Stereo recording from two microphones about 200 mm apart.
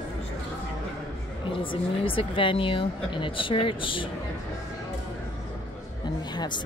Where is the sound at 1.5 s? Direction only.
25° left (ahead or behind).